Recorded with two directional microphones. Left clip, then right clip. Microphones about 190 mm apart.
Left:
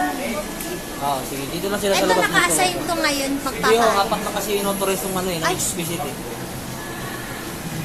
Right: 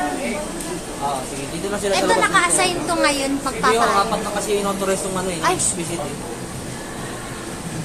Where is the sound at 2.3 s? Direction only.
15° right (ahead or behind).